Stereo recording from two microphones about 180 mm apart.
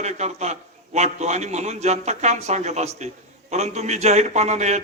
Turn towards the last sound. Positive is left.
turn(degrees=-40)  # may be behind; listen again after turning